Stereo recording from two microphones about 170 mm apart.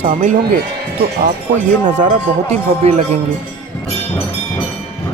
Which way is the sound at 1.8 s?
45° right (ahead or behind).